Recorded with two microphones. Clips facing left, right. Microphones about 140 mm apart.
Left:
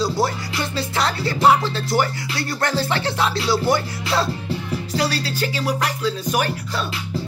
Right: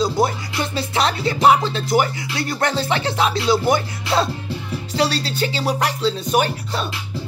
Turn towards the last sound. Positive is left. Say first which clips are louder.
# right 3 dB
turn(degrees=-25)  # may be behind; listen again after turning